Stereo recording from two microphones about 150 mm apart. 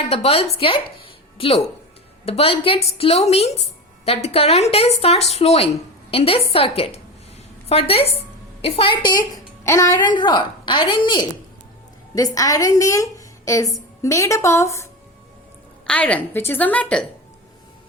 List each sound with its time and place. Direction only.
0.1 s a woman's voice: 40° left (ahead or behind); by 14.8 s 20° left (ahead or behind)
15.9 s a woman's voice: 10° left (ahead or behind)